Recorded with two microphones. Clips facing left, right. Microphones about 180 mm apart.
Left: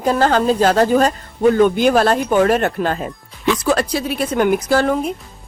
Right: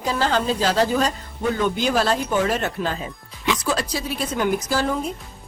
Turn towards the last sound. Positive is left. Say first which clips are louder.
# left 7 dB
turn(degrees=65)  # may be behind; listen again after turning